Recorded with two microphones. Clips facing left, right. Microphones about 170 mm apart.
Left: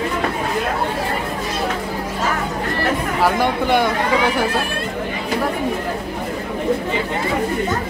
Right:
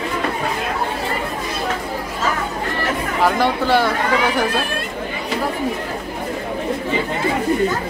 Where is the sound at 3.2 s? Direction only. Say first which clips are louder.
Right 1 dB; 15° left (ahead or behind).